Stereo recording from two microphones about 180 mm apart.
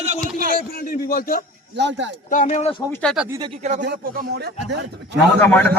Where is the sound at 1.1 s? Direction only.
55° left (ahead or behind).